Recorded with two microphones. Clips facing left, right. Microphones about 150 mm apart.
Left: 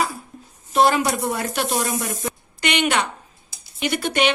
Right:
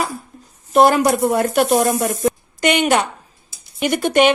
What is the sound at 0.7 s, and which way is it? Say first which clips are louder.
A woman's voice: right 5 dB; 50° right (ahead or behind).